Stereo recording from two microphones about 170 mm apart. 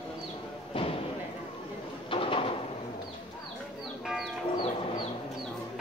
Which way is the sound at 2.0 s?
30° left (ahead or behind).